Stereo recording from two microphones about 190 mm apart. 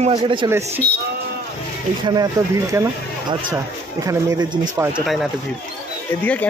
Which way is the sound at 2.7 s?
15° right (ahead or behind).